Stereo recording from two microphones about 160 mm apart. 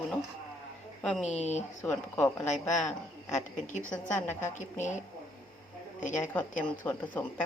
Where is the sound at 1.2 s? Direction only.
45° left (ahead or behind).